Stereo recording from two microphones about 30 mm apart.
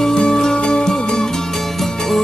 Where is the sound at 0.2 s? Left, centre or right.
Left.